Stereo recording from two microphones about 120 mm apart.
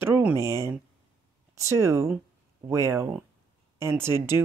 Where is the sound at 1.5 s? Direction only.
25° right (ahead or behind).